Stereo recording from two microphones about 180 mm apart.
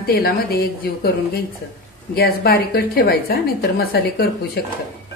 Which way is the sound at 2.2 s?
60° left (ahead or behind).